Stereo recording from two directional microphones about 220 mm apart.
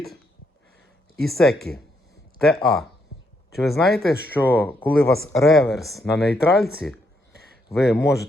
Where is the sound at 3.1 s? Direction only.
50° left (ahead or behind).